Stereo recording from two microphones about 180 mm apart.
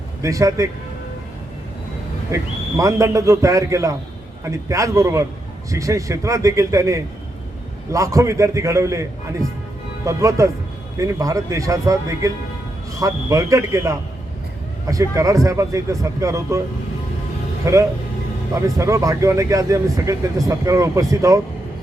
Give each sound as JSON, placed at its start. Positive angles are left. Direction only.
{"t": 0.2, "sound": "speech", "side_deg": -15}
{"t": 2.3, "sound": "speech", "side_deg": -15}
{"t": 17.7, "sound": "speech", "side_deg": -15}